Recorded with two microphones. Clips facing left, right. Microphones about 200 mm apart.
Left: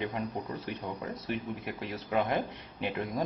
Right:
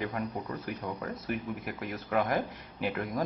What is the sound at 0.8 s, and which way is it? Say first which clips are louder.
Speech: right 1 dB; 15° left (ahead or behind).